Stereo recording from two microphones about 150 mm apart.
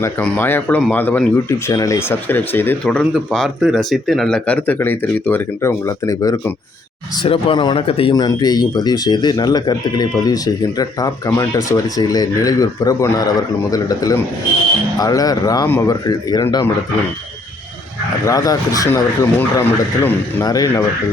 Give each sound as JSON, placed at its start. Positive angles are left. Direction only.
{"t": 0.0, "sound": "speech", "side_deg": 10}
{"t": 7.2, "sound": "speech", "side_deg": 35}
{"t": 8.1, "sound": "speech", "side_deg": 25}
{"t": 18.3, "sound": "speech", "side_deg": 25}
{"t": 20.4, "sound": "speech", "side_deg": 25}